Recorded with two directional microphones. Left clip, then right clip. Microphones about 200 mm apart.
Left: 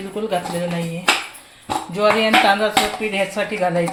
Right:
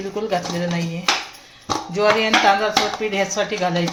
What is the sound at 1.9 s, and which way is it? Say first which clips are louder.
Speech: left 1 dB; 15° left (ahead or behind).